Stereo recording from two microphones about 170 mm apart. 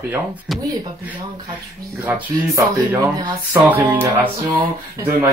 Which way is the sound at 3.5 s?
10° right (ahead or behind).